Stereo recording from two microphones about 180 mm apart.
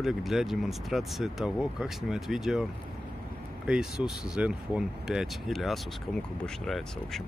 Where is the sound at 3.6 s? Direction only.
5° right (ahead or behind).